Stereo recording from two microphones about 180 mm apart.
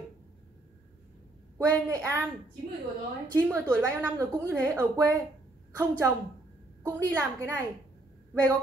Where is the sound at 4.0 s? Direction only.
10° right (ahead or behind).